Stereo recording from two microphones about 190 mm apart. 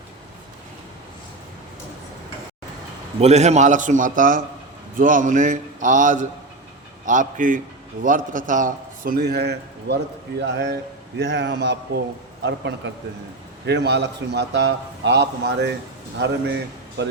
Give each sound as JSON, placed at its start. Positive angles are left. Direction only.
{"t": 3.2, "sound": "a man's voice", "side_deg": -35}